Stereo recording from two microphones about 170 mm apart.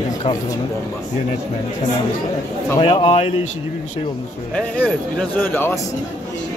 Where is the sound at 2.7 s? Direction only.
35° left (ahead or behind).